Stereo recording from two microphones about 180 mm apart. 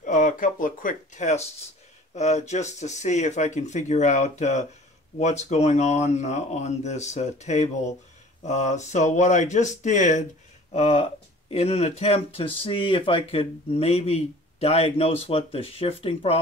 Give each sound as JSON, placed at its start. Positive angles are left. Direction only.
{"t": 0.0, "sound": "speech", "side_deg": 45}